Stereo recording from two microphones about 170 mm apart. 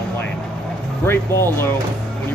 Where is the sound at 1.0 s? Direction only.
15° left (ahead or behind).